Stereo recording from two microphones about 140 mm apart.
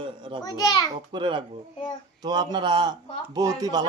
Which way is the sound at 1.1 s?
35° right (ahead or behind).